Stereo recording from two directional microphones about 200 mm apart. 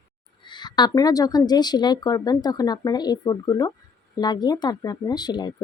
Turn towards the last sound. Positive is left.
turn(degrees=20)  # may be behind; listen again after turning